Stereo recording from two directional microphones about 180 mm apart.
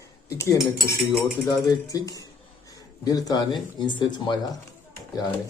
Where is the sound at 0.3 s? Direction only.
15° left (ahead or behind).